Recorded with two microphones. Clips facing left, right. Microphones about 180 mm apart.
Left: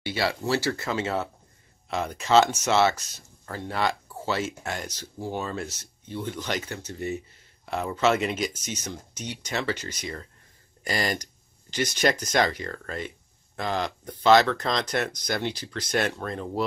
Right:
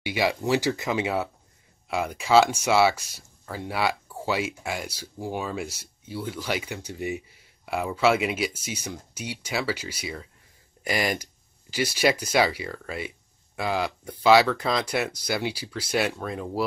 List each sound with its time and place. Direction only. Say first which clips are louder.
0.0 s speech: right 2 dB; 15° right (ahead or behind)